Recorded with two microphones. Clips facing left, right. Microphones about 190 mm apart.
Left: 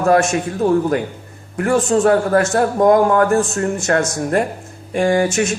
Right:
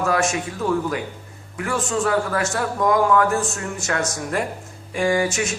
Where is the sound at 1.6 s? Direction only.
50° left (ahead or behind).